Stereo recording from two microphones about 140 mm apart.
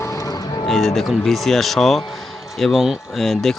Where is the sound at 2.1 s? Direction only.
Centre (ahead or behind).